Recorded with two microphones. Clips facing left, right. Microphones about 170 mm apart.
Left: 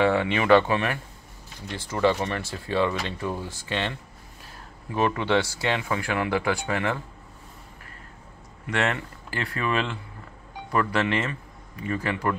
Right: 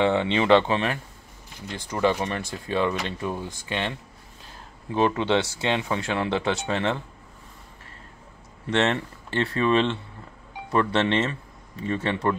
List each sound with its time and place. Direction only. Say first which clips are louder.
0.0 s speech: even; 20° right (ahead or behind)
4.9 s speech: right 1 dB; 20° right (ahead or behind)
8.6 s speech: right 3 dB; 25° right (ahead or behind)